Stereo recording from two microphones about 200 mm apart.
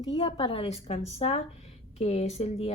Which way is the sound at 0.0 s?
30° left (ahead or behind).